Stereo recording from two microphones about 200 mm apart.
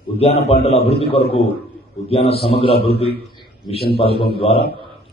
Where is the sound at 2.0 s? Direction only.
30° left (ahead or behind).